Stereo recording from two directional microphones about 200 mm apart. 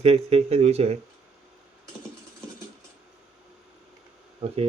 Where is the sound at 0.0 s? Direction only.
30° right (ahead or behind).